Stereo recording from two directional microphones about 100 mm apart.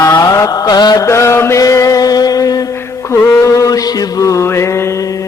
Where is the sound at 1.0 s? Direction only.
30° left (ahead or behind).